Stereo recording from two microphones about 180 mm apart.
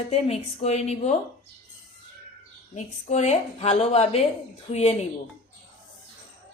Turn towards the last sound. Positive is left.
turn(degrees=35)  # may be behind; listen again after turning